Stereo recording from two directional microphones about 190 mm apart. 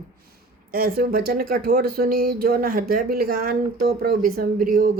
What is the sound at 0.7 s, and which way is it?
Speech, 55° right (ahead or behind).